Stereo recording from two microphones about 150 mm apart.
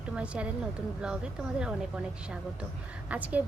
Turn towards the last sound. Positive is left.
turn(degrees=-10)  # may be behind; listen again after turning